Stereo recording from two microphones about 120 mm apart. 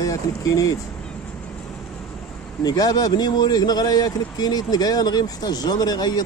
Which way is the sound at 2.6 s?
30° left (ahead or behind).